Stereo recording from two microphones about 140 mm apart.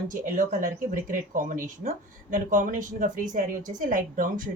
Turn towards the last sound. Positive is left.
turn(degrees=-75)  # may be behind; listen again after turning